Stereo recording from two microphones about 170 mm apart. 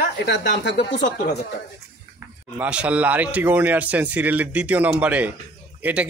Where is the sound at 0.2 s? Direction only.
85° left.